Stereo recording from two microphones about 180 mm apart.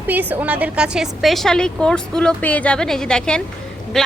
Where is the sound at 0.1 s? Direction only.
10° right (ahead or behind).